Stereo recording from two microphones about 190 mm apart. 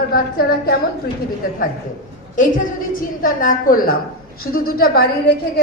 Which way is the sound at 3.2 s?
45° left (ahead or behind).